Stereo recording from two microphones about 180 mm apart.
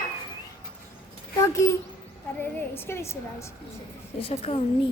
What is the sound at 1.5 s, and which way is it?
A woman's voice, 15° left (ahead or behind).